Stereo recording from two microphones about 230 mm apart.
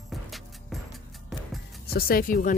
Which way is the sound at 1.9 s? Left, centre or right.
Left.